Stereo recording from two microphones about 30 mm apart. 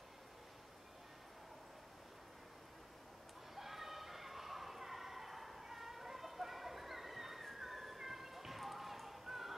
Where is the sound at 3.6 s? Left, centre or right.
Centre.